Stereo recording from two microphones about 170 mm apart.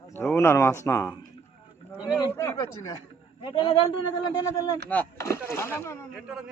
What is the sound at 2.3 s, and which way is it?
Speech, 20° left (ahead or behind).